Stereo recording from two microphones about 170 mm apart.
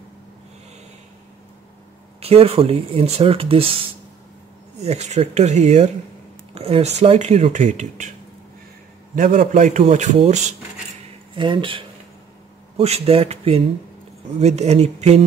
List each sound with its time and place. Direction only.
2.1 s speech: 35° right (ahead or behind)
4.7 s a man's voice: 40° right (ahead or behind)
9.1 s a man's voice: 55° right (ahead or behind)
11.3 s speech: 30° right (ahead or behind)